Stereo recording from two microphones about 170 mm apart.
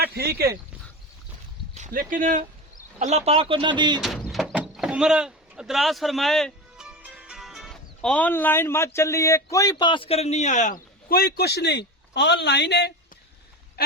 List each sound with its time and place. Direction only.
0.0 s a sound: 70° right (ahead or behind)
1.9 s speech: 55° right (ahead or behind)
3.0 s speech: 40° right (ahead or behind)
4.0 s speech: centre (ahead or behind); by 11.3 s 60° left (ahead or behind)
11.3 s a man's voice: 75° left (ahead or behind)